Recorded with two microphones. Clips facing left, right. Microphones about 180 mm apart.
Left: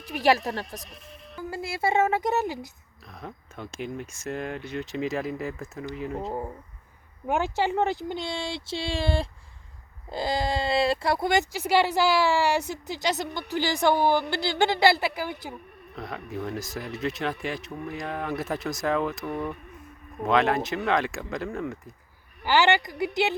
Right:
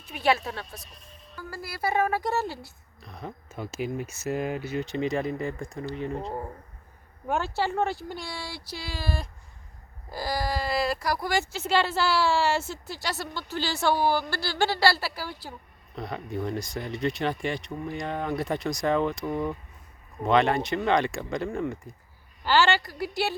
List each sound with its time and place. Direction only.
0.9 s speech: 85° left
1.4 s speech: 20° left (ahead or behind)
3.1 s speech: centre (ahead or behind)
7.3 s speech: 15° left (ahead or behind)
16.0 s speech: centre (ahead or behind)
20.2 s speech: centre (ahead or behind)
22.4 s a woman's voice: 15° left (ahead or behind)